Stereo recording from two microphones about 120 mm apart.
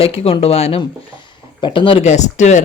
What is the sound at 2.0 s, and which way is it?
Speech, 75° left (ahead or behind).